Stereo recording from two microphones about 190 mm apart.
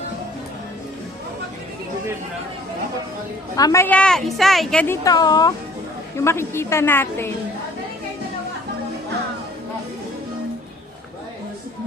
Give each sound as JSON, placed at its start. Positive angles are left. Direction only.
{"t": 3.5, "sound": "a woman's voice", "side_deg": 15}
{"t": 5.0, "sound": "a woman's voice", "side_deg": 20}